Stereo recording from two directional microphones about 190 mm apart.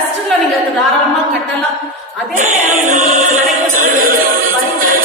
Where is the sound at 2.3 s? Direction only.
40° right (ahead or behind).